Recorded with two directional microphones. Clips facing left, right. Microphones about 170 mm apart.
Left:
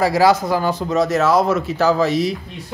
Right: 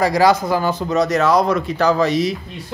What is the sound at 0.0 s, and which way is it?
Speech, 5° left (ahead or behind).